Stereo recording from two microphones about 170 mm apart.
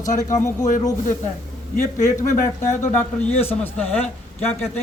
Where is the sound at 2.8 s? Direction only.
10° left (ahead or behind).